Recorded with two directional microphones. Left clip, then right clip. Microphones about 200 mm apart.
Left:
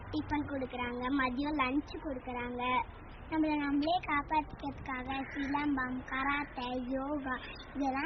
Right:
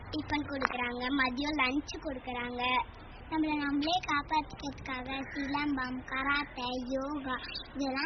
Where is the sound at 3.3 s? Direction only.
15° left (ahead or behind).